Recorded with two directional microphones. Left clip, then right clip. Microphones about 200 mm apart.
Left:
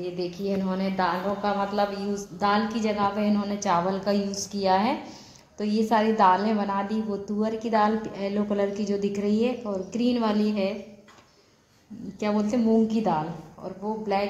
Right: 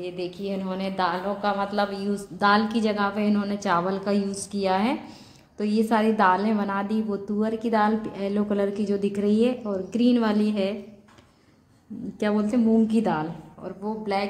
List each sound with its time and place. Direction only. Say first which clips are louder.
0.0 s a woman's voice: left 1 dB; 5° right (ahead or behind)
2.3 s a woman's voice: right 4 dB; 25° right (ahead or behind)
12.2 s a woman's voice: right 2 dB; 20° right (ahead or behind)
12.4 s a woman's voice: right 1 dB; 10° right (ahead or behind)